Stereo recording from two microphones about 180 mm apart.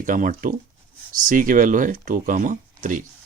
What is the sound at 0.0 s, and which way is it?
Speech, 50° right (ahead or behind).